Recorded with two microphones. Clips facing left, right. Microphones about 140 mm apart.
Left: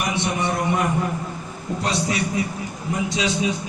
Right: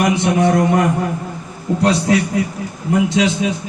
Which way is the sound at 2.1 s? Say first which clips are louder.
Right 11 dB; 90° right.